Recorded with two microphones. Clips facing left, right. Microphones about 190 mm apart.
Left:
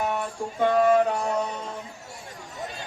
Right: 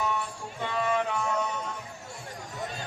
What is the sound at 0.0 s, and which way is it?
Music, 55° left (ahead or behind).